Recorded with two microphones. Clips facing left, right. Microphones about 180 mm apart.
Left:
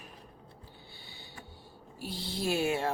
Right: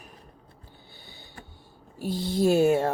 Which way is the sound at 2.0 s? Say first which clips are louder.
Right 11 dB; 50° right (ahead or behind).